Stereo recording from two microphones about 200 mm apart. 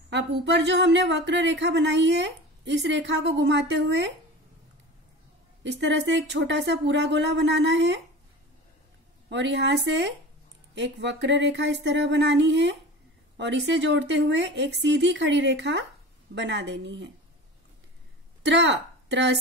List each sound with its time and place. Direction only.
0.1 s speech: 60° right (ahead or behind)
5.6 s speech: 60° right (ahead or behind)
9.3 s speech: 60° right (ahead or behind)
18.4 s speech: 60° right (ahead or behind)